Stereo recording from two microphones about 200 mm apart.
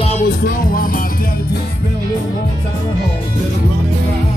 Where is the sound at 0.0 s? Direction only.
40° left (ahead or behind).